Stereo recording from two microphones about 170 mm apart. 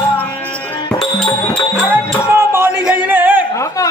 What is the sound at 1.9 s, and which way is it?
Music, 15° right (ahead or behind).